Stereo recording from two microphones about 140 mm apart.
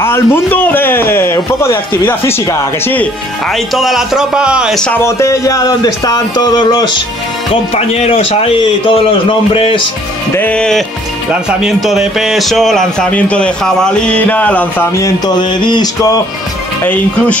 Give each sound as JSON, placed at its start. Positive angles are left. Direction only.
{"t": 0.0, "sound": "a man's voice", "side_deg": 15}
{"t": 3.5, "sound": "a man's voice", "side_deg": 0}
{"t": 5.0, "sound": "speech", "side_deg": 20}
{"t": 7.7, "sound": "a man's voice", "side_deg": 50}
{"t": 10.3, "sound": "a man's voice", "side_deg": 10}
{"t": 15.0, "sound": "speech", "side_deg": 25}
{"t": 16.8, "sound": "a man's voice", "side_deg": 10}